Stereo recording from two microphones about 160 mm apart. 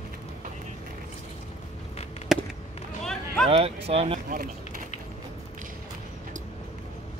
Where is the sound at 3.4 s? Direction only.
40° right (ahead or behind).